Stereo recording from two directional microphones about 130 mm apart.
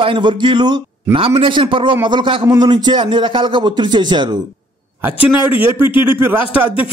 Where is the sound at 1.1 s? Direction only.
45° right (ahead or behind).